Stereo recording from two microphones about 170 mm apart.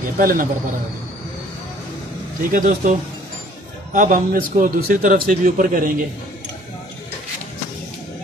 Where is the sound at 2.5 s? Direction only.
50° right (ahead or behind).